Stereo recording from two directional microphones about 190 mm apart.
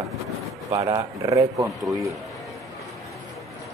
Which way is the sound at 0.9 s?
20° right (ahead or behind).